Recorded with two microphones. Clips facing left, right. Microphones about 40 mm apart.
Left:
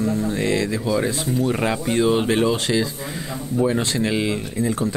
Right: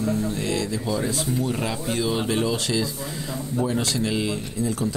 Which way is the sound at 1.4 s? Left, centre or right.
Left.